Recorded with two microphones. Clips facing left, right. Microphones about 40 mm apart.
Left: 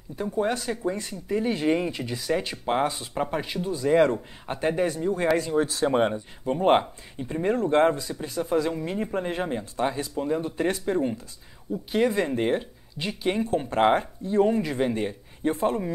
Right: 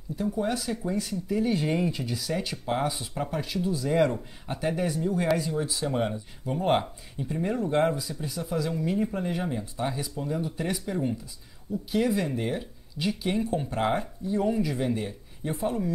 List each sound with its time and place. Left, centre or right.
0.1 s speech: left
5.5 s speech: left
8.4 s speech: left
12.4 s speech: left
13.0 s speech: centre
13.7 s speech: left